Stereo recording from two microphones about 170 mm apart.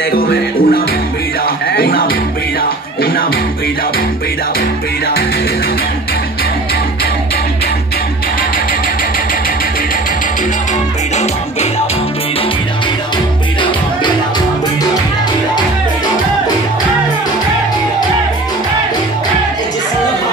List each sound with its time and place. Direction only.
0.1 s music: 60° left (ahead or behind)